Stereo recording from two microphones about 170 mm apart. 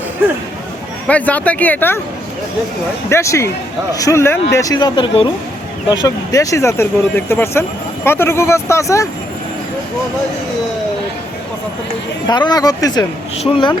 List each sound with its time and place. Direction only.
1.0 s speech: 10° left (ahead or behind)
3.1 s speech: 15° left (ahead or behind)
12.3 s speech: 25° left (ahead or behind)